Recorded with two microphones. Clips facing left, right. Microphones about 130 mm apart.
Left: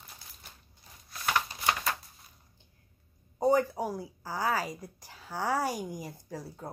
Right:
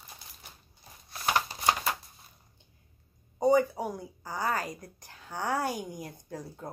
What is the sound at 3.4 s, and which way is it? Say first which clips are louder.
A woman's voice: right 2 dB; centre (ahead or behind).